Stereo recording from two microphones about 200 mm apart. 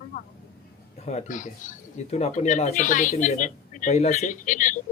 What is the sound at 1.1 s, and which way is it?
Speech, 35° left (ahead or behind).